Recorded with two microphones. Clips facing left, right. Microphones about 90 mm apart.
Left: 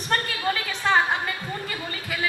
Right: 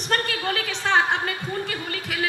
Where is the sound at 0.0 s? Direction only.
70° right (ahead or behind).